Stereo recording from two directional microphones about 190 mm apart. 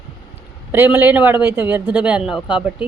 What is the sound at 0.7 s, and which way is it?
A man's voice, 10° right (ahead or behind).